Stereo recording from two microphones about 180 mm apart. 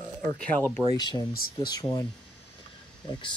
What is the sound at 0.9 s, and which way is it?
Speech, 20° left (ahead or behind).